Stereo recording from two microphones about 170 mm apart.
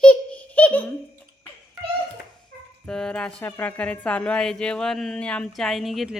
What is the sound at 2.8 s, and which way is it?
A woman's voice, 5° left (ahead or behind).